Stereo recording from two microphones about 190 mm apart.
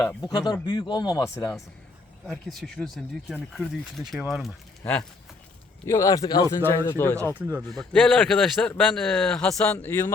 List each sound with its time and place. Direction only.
0.2 s speech: 20° left (ahead or behind)
2.2 s speech: centre (ahead or behind)
5.8 s speech: 15° left (ahead or behind)
7.3 s a man's voice: 10° right (ahead or behind)
7.7 s speech: centre (ahead or behind)